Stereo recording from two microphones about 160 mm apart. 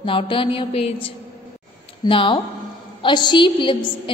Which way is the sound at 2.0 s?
30° left (ahead or behind).